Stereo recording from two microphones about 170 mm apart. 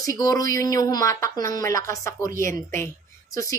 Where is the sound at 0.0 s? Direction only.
20° left (ahead or behind).